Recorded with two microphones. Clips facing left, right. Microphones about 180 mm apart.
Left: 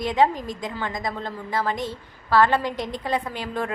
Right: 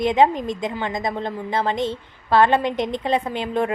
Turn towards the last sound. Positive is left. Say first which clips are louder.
# right 6 dB
turn(degrees=-20)  # may be behind; listen again after turning